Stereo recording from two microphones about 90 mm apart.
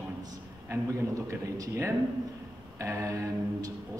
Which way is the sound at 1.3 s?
35° right (ahead or behind).